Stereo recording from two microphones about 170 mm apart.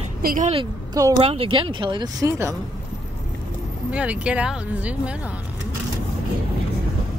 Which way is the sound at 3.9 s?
5° right (ahead or behind).